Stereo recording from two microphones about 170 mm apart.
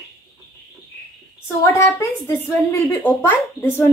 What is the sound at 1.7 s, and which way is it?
Speech, 15° left (ahead or behind).